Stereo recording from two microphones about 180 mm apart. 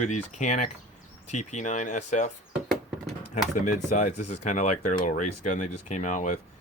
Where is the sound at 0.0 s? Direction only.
40° left (ahead or behind).